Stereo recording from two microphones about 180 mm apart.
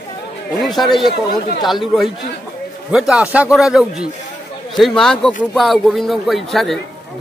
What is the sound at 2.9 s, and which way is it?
A man's voice, 5° right (ahead or behind).